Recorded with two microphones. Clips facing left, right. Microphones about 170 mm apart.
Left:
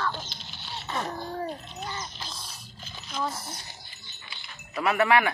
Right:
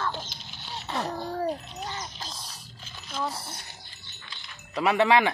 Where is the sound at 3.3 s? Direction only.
30° right (ahead or behind).